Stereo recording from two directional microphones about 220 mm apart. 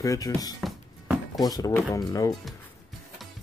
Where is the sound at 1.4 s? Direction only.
15° left (ahead or behind).